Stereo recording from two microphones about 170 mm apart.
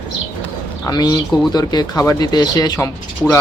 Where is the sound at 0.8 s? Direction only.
25° left (ahead or behind).